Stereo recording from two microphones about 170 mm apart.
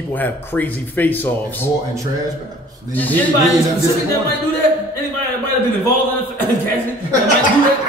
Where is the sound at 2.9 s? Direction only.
10° left (ahead or behind).